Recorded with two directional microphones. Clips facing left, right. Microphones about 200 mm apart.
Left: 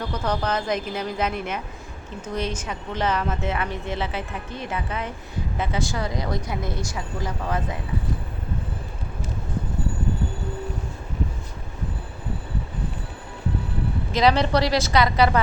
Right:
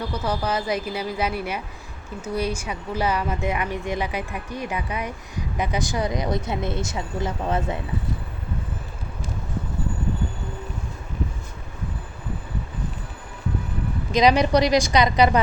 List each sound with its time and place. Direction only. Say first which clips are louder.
0.1 s a woman's voice: left 2 dB; 10° right (ahead or behind); by 7.8 s 25° right (ahead or behind)
14.1 s a woman's voice: right 2 dB; 15° right (ahead or behind)